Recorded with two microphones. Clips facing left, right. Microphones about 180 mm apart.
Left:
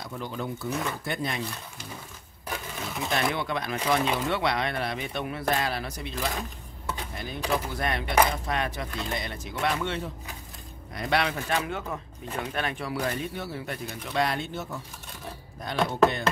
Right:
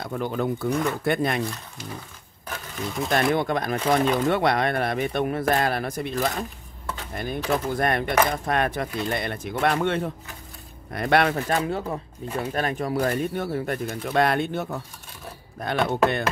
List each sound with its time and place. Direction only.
0.0 s speech: 55° right (ahead or behind)
3.1 s speech: 45° right (ahead or behind)
11.6 s speech: 35° right (ahead or behind); by 16.3 s 60° right (ahead or behind)